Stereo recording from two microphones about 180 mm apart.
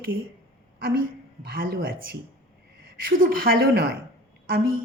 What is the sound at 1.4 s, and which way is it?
Speech, 55° right (ahead or behind).